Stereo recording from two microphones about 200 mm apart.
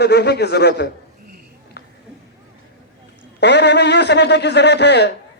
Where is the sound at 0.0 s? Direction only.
55° left (ahead or behind).